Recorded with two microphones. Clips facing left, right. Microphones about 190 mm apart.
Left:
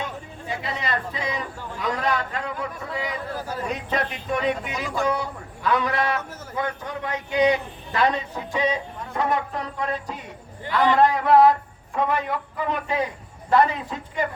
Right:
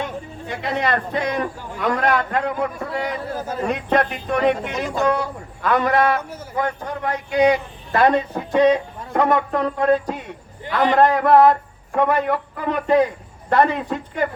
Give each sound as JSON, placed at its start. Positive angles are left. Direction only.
{"t": 0.6, "sound": "a man's voice", "side_deg": -60}
{"t": 12.1, "sound": "a man's voice", "side_deg": -50}